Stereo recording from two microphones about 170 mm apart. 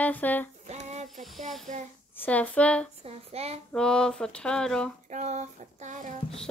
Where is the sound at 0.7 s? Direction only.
45° right (ahead or behind).